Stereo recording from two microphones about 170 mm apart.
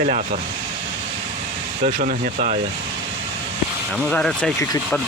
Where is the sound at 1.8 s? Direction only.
50° right (ahead or behind).